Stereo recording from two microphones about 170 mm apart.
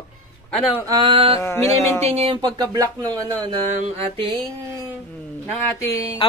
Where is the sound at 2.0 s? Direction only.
35° right (ahead or behind).